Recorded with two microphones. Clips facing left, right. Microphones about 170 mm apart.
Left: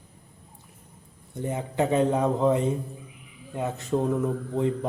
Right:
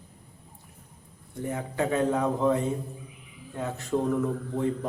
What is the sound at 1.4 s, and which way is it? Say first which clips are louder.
Speech: left 3 dB; 20° left (ahead or behind).